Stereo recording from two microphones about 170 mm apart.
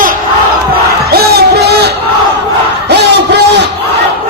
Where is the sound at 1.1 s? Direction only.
65° right (ahead or behind).